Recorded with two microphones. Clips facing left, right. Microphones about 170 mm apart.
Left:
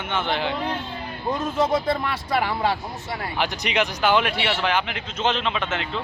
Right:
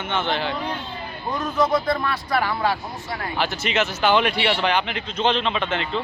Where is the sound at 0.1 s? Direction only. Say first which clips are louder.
Even; 10° left (ahead or behind).